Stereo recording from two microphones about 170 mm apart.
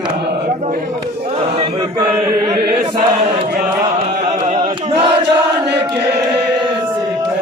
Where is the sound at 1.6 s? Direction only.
25° right (ahead or behind).